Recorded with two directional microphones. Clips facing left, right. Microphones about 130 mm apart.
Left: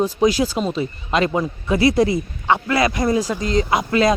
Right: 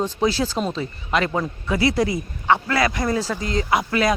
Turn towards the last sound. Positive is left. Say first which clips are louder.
# left 3 dB
turn(degrees=25)  # may be behind; listen again after turning